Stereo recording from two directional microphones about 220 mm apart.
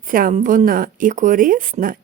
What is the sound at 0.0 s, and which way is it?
Speech, 40° right (ahead or behind).